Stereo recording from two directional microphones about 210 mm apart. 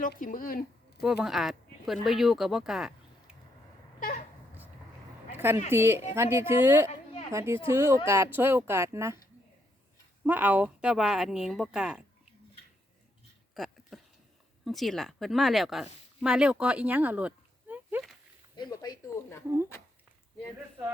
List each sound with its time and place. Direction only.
0.0 s speech: 40° left (ahead or behind)
1.0 s speech: centre (ahead or behind)
5.7 s speech: 10° right (ahead or behind)
10.2 s speech: 10° right (ahead or behind)
13.5 s a sound: centre (ahead or behind)
14.6 s speech: centre (ahead or behind)
18.5 s speech: 20° left (ahead or behind)